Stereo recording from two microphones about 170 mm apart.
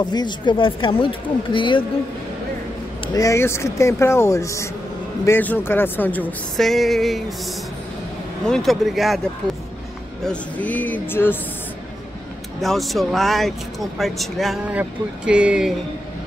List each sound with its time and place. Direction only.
0.0 s speech: 25° left (ahead or behind)
3.2 s a woman's voice: 15° left (ahead or behind); by 7.3 s centre (ahead or behind)
8.5 s speech: centre (ahead or behind)
10.2 s a woman's voice: 10° left (ahead or behind)
12.5 s speech: centre (ahead or behind)